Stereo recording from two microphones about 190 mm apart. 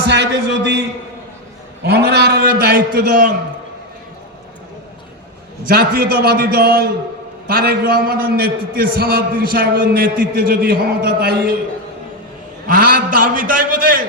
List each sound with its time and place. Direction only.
0.1 s a man's voice: 65° right (ahead or behind); by 3.3 s 50° right (ahead or behind)
5.6 s a man's voice: 50° right (ahead or behind)
12.6 s a man's voice: 50° right (ahead or behind)